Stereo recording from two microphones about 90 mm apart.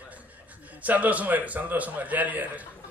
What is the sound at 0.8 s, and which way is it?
A man's voice, 15° right (ahead or behind).